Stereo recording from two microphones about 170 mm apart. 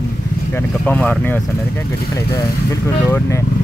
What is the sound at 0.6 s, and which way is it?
Speech, 10° left (ahead or behind).